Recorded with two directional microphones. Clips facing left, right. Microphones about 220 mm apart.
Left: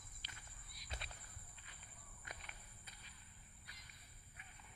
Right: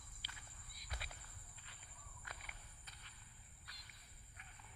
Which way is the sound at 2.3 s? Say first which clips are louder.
Left 2 dB; 20° left (ahead or behind).